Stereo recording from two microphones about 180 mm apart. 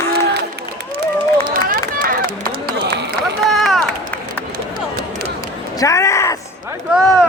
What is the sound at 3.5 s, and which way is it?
Run, centre (ahead or behind).